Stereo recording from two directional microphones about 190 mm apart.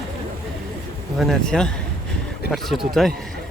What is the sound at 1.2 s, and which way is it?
Speech, centre (ahead or behind).